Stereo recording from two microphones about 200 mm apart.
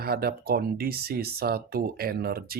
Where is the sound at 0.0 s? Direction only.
50° right (ahead or behind).